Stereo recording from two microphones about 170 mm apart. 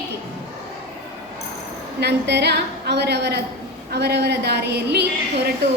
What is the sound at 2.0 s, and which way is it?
A woman's voice, 80° right.